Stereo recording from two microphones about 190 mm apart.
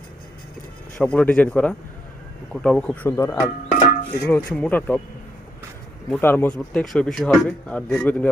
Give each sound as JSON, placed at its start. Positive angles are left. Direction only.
{"t": 0.9, "sound": "speech", "side_deg": 5}
{"t": 6.1, "sound": "speech", "side_deg": 10}